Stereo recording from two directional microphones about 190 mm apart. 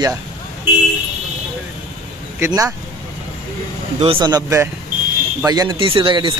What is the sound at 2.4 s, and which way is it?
Speech, 20° right (ahead or behind).